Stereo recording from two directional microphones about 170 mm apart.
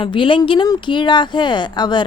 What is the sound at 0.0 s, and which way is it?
Speech, 30° left (ahead or behind).